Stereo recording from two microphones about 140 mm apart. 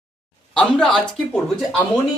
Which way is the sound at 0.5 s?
5° left (ahead or behind).